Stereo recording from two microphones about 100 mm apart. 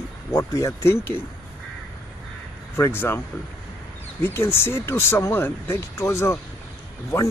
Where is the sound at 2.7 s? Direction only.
20° left (ahead or behind).